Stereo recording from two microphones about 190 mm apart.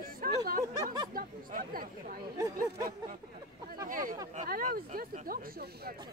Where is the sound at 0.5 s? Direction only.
50° right (ahead or behind).